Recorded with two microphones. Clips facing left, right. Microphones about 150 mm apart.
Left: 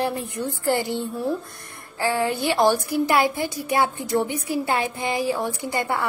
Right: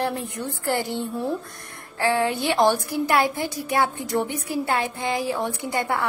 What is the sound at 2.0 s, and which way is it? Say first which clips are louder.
A woman's voice: right 1 dB; 5° left (ahead or behind).